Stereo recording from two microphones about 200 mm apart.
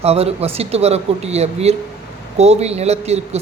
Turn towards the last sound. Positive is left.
turn(degrees=-35)  # may be behind; listen again after turning